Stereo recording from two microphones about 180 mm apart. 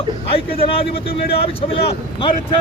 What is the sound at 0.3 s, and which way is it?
Speech, 30° left (ahead or behind).